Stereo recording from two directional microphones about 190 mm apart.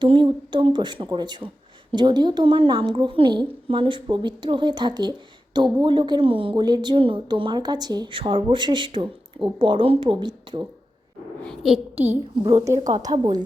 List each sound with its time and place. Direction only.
0.0 s a woman's voice: 25° right (ahead or behind)
11.4 s a child's voice: centre (ahead or behind)
12.4 s a woman's voice: 15° right (ahead or behind)